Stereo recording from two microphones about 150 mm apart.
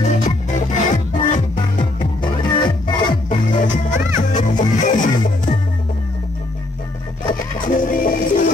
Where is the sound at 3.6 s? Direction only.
60° left (ahead or behind).